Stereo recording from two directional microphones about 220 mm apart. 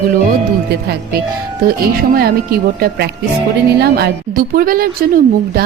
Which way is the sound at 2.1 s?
45° right (ahead or behind).